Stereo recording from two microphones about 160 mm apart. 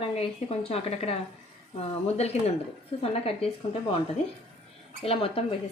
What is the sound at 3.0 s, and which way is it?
Speech, 40° left (ahead or behind).